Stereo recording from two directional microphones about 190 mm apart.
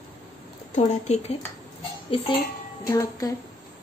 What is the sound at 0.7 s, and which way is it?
A child's voice, 35° left (ahead or behind).